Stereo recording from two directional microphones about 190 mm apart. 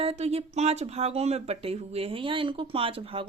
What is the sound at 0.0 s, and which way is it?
Speech, 35° right (ahead or behind).